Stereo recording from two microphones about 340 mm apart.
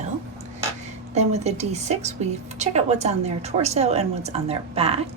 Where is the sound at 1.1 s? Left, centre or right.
Centre.